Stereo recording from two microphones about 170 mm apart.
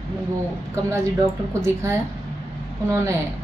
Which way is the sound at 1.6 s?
15° right (ahead or behind).